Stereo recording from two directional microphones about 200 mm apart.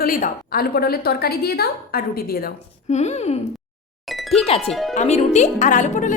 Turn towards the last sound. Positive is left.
turn(degrees=40)  # may be behind; listen again after turning